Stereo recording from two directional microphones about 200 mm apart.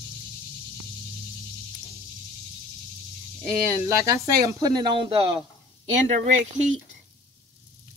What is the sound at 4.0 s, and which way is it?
Speech, 15° right (ahead or behind).